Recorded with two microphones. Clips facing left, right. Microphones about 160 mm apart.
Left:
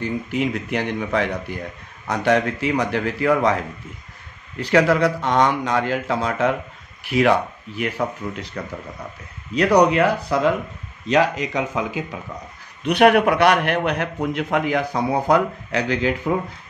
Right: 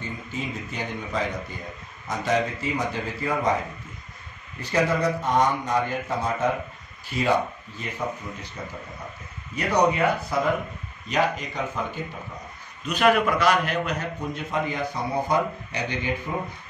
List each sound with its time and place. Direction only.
0.0 s a man's voice: 75° left (ahead or behind)
9.5 s speech: 90° left
12.8 s a man's voice: 65° left (ahead or behind); by 16.3 s 90° left